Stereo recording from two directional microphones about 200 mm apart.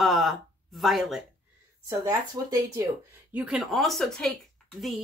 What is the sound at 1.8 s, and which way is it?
Speech, 15° right (ahead or behind).